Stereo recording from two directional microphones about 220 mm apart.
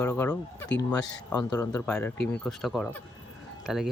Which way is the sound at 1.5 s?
10° left (ahead or behind).